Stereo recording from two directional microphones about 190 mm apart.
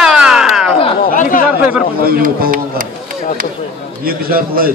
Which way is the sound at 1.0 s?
45° left (ahead or behind).